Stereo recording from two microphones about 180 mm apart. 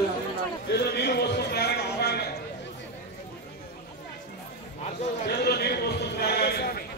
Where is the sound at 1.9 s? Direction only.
65° left (ahead or behind).